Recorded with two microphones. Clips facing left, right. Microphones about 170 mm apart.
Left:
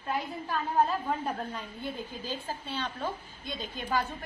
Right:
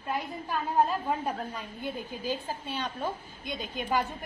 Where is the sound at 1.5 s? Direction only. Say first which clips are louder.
Right 1 dB; 10° right (ahead or behind).